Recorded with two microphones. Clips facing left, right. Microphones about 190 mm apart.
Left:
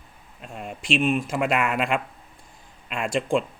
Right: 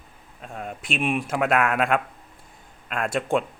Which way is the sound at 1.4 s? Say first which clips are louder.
Right 4 dB; 55° right (ahead or behind).